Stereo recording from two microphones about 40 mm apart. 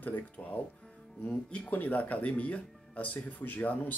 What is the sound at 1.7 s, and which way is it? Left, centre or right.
Speech, left.